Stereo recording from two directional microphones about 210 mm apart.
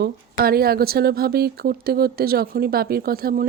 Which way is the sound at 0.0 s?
45° right (ahead or behind).